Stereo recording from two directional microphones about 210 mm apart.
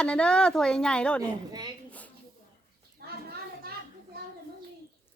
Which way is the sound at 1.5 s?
20° right (ahead or behind).